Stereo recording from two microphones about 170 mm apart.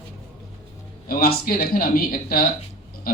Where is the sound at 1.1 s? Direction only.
60° left (ahead or behind).